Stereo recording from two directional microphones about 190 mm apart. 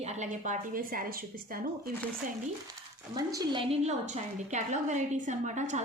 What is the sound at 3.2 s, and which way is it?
A woman's voice, 20° right (ahead or behind).